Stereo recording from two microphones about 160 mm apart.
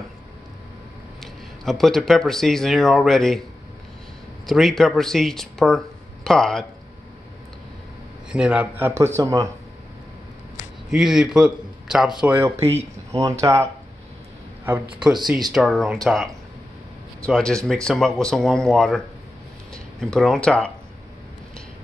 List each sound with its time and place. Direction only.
1.2 s speech: centre (ahead or behind)
4.5 s a man's voice: centre (ahead or behind)
8.3 s speech: 5° right (ahead or behind)
10.9 s a man's voice: 5° right (ahead or behind)
17.3 s a man's voice: 5° left (ahead or behind)